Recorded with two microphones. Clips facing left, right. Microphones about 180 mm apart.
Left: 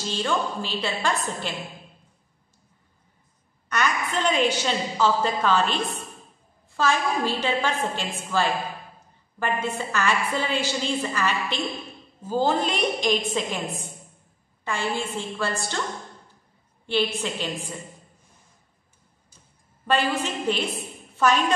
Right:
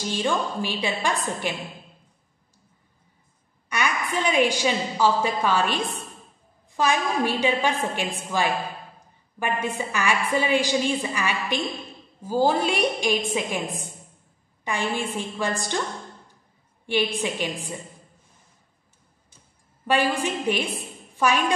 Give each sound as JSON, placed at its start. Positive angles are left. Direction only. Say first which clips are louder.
{"t": 0.0, "sound": "a woman's voice", "louder": "right 1 dB", "side_deg": -15}
{"t": 3.6, "sound": "a woman's voice", "louder": "left 1 dB", "side_deg": -10}
{"t": 14.6, "sound": "a woman's voice", "louder": "right 1 dB", "side_deg": -15}
{"t": 16.8, "sound": "a woman's voice", "louder": "right 1 dB", "side_deg": -10}
{"t": 19.9, "sound": "a woman's voice", "louder": "right 1 dB", "side_deg": -10}